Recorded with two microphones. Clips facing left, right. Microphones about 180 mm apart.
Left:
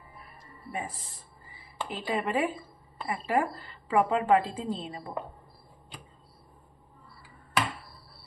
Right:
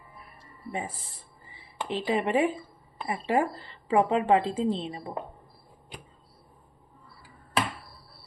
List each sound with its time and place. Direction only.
0.7 s a woman's voice: 25° right (ahead or behind)